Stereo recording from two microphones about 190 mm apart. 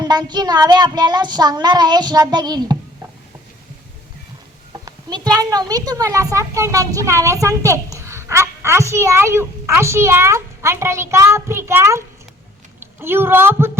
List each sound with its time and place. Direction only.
0.0 s child singing: 20° right (ahead or behind)
4.7 s a child's voice: 20° right (ahead or behind)